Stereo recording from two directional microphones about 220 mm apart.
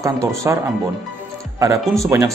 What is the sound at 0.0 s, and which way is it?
Speech, 15° right (ahead or behind).